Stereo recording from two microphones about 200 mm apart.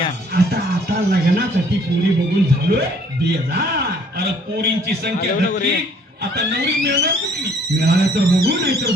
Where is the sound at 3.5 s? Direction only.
50° right (ahead or behind).